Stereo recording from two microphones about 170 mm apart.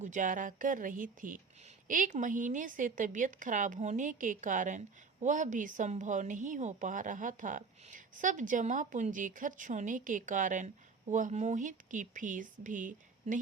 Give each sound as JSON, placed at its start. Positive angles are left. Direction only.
{"t": 0.0, "sound": "a woman's voice", "side_deg": -50}